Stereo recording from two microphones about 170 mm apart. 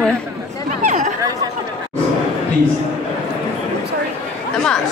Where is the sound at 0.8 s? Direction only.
45° right (ahead or behind).